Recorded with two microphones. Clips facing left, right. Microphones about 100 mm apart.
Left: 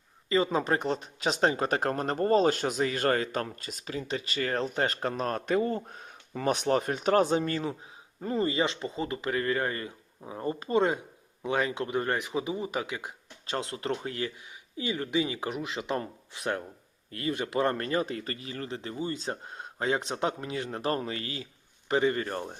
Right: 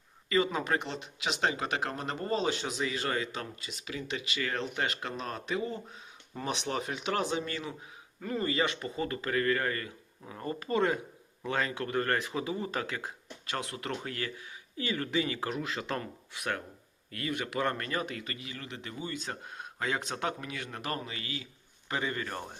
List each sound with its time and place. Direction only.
0.3 s speech: 30° left (ahead or behind); by 13.1 s 15° left (ahead or behind)
13.5 s speech: 25° left (ahead or behind)